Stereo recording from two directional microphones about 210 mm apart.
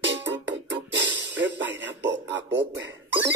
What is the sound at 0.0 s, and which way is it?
Music, 60° right (ahead or behind).